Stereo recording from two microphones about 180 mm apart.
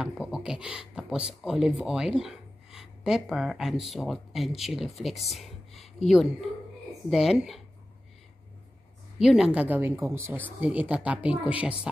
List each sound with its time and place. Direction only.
0.0 s speech: 5° right (ahead or behind)
9.2 s speech: 5° right (ahead or behind)